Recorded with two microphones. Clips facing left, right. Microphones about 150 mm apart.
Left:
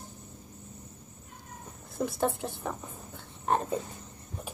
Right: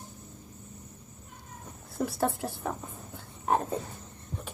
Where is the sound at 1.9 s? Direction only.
Centre (ahead or behind).